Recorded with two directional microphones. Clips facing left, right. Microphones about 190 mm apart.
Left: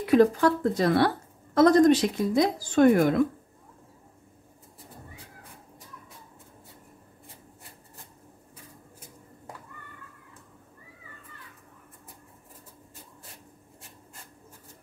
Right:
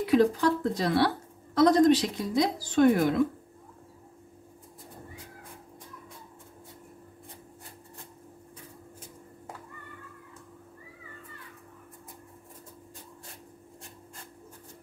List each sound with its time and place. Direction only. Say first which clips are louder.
0.0 s a woman's voice: left 3 dB; 50° left (ahead or behind)